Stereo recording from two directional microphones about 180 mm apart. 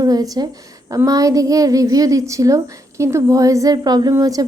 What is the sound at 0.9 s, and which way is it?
A woman's voice, 20° right (ahead or behind).